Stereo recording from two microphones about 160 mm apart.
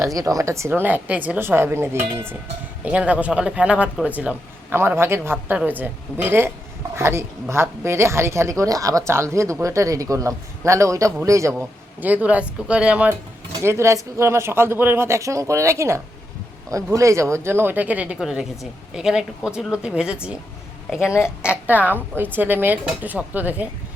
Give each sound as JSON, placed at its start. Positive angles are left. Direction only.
{"t": 0.0, "sound": "a woman's voice", "side_deg": -20}
{"t": 21.7, "sound": "speech", "side_deg": -10}